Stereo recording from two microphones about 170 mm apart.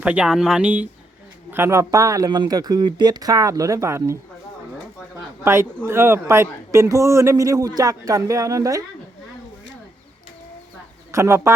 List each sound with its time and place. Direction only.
0.0 s speech: 5° right (ahead or behind)
11.1 s speech: 15° right (ahead or behind)